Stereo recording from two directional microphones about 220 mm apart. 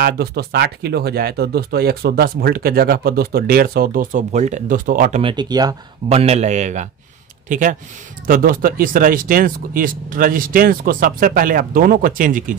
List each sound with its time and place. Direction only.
0.0 s speech: 45° right (ahead or behind)
5.2 s speech: 20° right (ahead or behind)
6.0 s speech: 30° right (ahead or behind)